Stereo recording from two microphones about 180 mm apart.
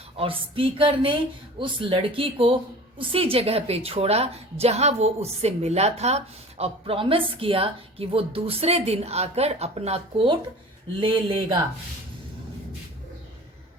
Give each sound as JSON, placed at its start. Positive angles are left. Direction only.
{"t": 0.2, "sound": "a woman's voice", "side_deg": -30}